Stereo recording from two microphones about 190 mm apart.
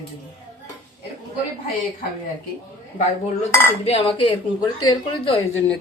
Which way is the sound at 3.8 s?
30° left (ahead or behind).